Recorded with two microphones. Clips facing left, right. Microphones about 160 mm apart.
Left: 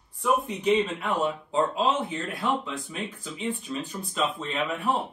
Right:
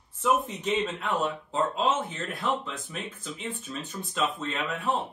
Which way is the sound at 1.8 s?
Centre (ahead or behind).